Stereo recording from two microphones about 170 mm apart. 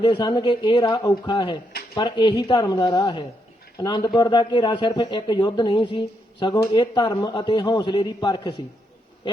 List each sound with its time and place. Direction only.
0.0 s a man's voice: 25° left (ahead or behind)